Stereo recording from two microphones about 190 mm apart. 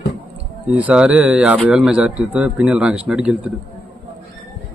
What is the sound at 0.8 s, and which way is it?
Speech, 5° right (ahead or behind).